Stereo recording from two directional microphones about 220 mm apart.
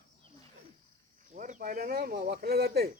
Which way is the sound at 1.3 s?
35° right (ahead or behind).